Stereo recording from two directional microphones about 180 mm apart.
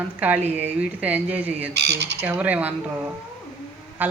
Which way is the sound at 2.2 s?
10° right (ahead or behind).